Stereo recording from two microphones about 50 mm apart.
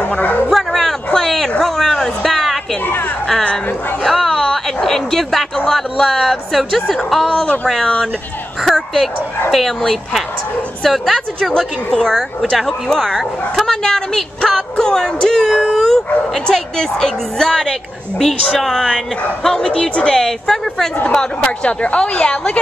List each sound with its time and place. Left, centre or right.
0.0 s a sound: left
0.5 s a sound: centre
4.0 s bow-wow: centre
5.7 s speech: centre
18.6 s speech: centre
19.4 s speech: centre
21.1 s a woman's voice: centre